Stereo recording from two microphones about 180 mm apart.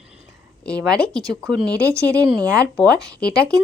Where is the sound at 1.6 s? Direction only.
20° right (ahead or behind).